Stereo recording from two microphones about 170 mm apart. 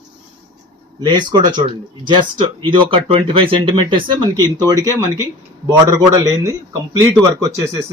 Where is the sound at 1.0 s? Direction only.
25° right (ahead or behind).